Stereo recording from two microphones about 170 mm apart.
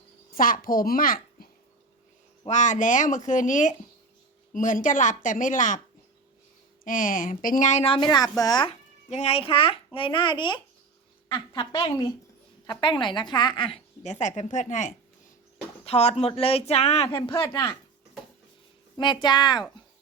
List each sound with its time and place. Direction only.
0.3 s a child's voice: 55° left (ahead or behind)
2.5 s speech: 45° left (ahead or behind)
6.8 s speech: 50° left (ahead or behind)
7.9 s a woman's voice: 25° left (ahead or behind)
9.0 s a child's voice: 40° left (ahead or behind)
14.0 s a child's voice: 45° left (ahead or behind)
17.4 s a woman's voice: 20° left (ahead or behind)
18.9 s a woman's voice: 25° left (ahead or behind)